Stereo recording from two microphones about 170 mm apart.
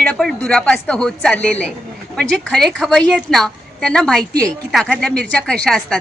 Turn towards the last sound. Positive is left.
turn(degrees=5)  # may be behind; listen again after turning